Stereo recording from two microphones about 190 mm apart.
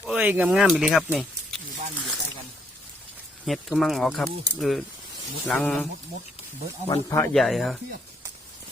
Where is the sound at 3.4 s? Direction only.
Centre (ahead or behind).